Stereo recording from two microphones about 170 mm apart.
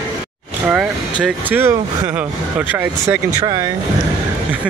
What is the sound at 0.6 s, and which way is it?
Speech, 5° right (ahead or behind).